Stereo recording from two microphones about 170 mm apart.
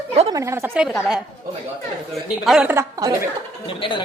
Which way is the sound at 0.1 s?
35° right (ahead or behind).